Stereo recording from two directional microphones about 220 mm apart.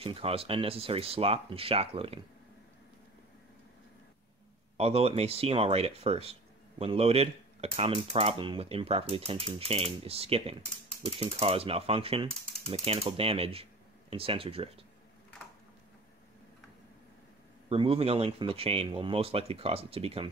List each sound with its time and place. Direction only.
0.0 s speech: 25° right (ahead or behind)
4.7 s speech: 25° right (ahead or behind)
17.6 s speech: 25° right (ahead or behind)